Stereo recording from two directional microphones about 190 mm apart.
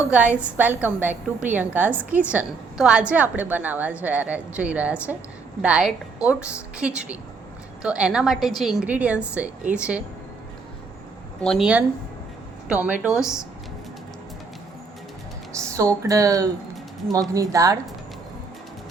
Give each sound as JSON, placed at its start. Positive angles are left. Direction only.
{"t": 0.1, "sound": "a woman's voice", "side_deg": -5}
{"t": 11.3, "sound": "a woman's voice", "side_deg": 0}
{"t": 15.5, "sound": "music", "side_deg": -15}
{"t": 16.0, "sound": "a woman's voice", "side_deg": -15}